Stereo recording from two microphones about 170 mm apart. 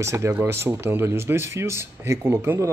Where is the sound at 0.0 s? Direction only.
15° right (ahead or behind).